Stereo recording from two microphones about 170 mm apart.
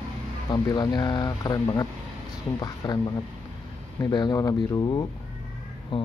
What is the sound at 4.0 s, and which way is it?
Speech, 25° left (ahead or behind).